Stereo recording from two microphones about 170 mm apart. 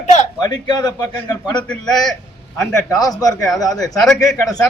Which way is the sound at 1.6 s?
5° left (ahead or behind).